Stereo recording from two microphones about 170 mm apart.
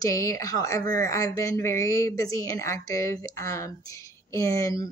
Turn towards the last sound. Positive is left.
turn(degrees=20)  # may be behind; listen again after turning